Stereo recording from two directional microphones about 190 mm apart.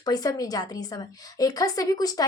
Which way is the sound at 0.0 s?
20° left (ahead or behind).